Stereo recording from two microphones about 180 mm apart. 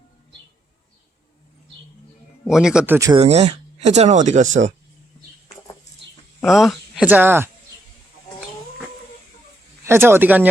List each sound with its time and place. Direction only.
2.4 s speech: centre (ahead or behind)
3.2 s speech: 35° right (ahead or behind)
6.4 s speech: centre (ahead or behind)
9.8 s speech: 15° right (ahead or behind)